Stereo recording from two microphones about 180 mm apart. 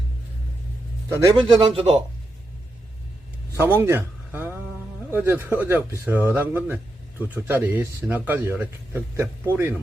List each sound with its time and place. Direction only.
1.4 s speech: 30° right (ahead or behind)
3.6 s a man's voice: 15° right (ahead or behind)